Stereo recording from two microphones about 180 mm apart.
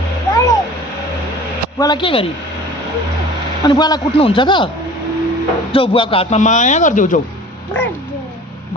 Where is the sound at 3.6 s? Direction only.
25° left (ahead or behind).